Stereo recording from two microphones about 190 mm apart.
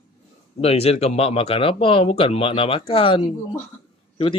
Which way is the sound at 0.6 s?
30° left (ahead or behind).